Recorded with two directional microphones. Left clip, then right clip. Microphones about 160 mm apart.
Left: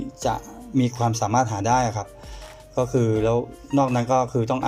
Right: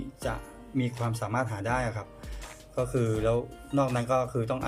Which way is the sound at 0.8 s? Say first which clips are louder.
Left 10 dB; 20° left (ahead or behind).